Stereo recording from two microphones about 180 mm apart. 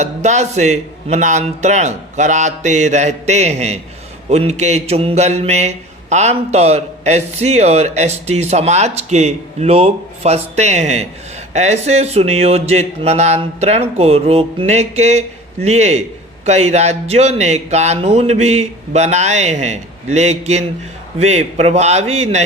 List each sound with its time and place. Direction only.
0.0 s mantra: 40° right (ahead or behind)